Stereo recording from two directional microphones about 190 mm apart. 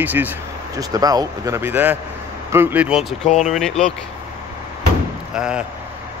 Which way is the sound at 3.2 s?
40° left (ahead or behind).